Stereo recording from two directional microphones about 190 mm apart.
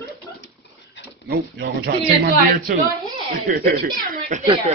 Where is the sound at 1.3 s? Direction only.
55° right (ahead or behind).